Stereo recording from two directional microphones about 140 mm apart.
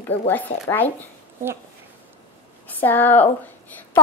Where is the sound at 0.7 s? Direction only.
15° left (ahead or behind).